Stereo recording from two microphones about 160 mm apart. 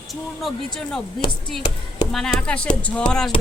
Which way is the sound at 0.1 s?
Centre (ahead or behind).